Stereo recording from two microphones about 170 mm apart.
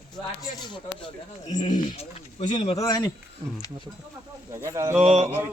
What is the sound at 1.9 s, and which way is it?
Speech, 40° left (ahead or behind).